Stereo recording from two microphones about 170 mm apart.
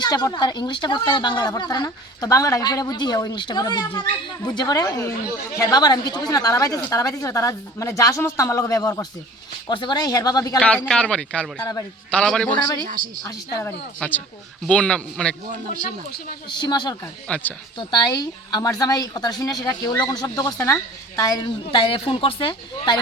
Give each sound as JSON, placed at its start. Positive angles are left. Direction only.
{"t": 0.0, "sound": "speech", "side_deg": 25}
{"t": 10.6, "sound": "speech", "side_deg": 10}
{"t": 11.6, "sound": "speech", "side_deg": 20}
{"t": 12.1, "sound": "speech", "side_deg": 5}
{"t": 15.4, "sound": "speech", "side_deg": -50}
{"t": 16.1, "sound": "speech", "side_deg": 60}
{"t": 16.5, "sound": "speech", "side_deg": 25}
{"t": 17.2, "sound": "speech", "side_deg": 5}
{"t": 17.7, "sound": "speech", "side_deg": 25}